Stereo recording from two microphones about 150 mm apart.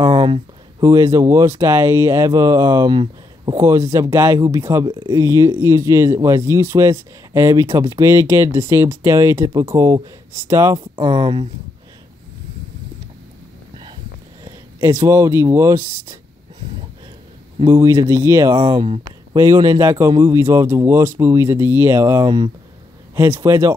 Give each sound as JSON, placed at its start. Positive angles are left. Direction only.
{"t": 0.1, "sound": "a sound", "side_deg": -35}
{"t": 0.8, "sound": "speech", "side_deg": -20}
{"t": 4.8, "sound": "speech", "side_deg": -30}
{"t": 5.1, "sound": "speech", "side_deg": -20}
{"t": 11.0, "sound": "speech", "side_deg": -35}
{"t": 14.4, "sound": "speech", "side_deg": -20}
{"t": 17.6, "sound": "speech", "side_deg": -20}
{"t": 18.5, "sound": "speech", "side_deg": -35}
{"t": 19.3, "sound": "speech", "side_deg": -20}